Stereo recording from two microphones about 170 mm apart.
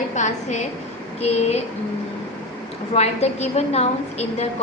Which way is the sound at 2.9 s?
40° left (ahead or behind).